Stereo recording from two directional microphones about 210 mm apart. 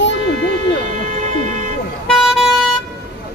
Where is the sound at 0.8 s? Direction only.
35° right (ahead or behind).